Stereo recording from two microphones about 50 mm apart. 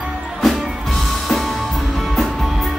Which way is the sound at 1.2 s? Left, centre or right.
Centre.